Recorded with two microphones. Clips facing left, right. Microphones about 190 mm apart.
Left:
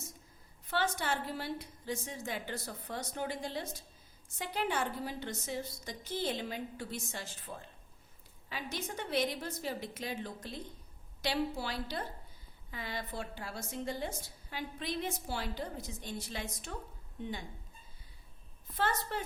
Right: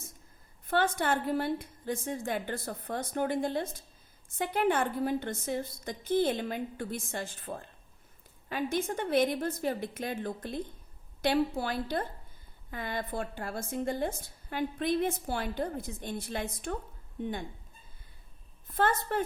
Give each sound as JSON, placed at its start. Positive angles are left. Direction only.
{"t": 0.7, "sound": "a woman's voice", "side_deg": -50}
{"t": 18.7, "sound": "a woman's voice", "side_deg": -50}